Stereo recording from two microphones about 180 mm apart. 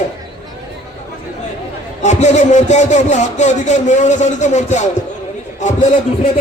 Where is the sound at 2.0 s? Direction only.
40° left (ahead or behind).